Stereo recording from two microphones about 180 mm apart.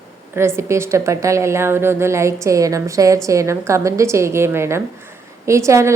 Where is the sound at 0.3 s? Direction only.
15° right (ahead or behind).